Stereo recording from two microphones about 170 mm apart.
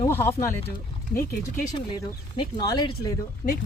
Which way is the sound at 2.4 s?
25° left (ahead or behind).